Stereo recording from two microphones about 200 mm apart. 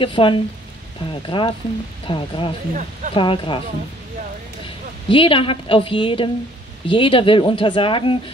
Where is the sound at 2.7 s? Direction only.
40° right (ahead or behind).